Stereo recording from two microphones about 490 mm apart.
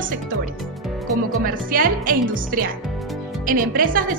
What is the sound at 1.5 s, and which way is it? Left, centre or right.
A woman's voice, centre.